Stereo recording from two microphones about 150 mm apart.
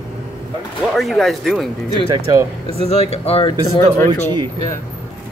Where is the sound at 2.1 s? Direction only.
25° right (ahead or behind).